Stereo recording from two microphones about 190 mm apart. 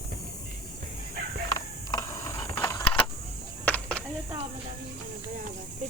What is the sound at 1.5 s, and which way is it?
Mechanisms, 20° left (ahead or behind).